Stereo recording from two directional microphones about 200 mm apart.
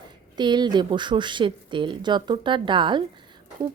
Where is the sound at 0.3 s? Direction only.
20° right (ahead or behind).